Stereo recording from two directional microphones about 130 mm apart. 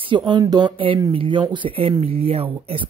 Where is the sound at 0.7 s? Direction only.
45° right (ahead or behind).